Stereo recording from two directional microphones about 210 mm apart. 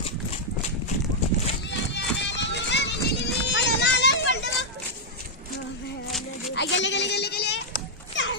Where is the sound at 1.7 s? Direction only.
55° left (ahead or behind).